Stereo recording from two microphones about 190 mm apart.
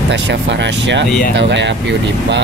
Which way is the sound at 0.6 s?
70° right (ahead or behind).